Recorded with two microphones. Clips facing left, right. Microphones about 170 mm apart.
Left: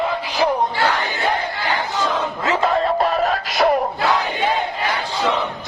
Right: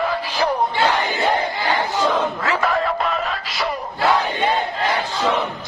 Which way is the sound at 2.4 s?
25° left (ahead or behind).